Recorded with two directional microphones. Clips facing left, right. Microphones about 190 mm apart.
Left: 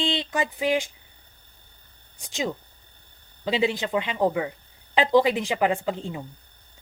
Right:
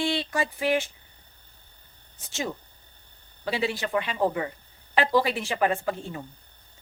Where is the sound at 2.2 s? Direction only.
15° left (ahead or behind).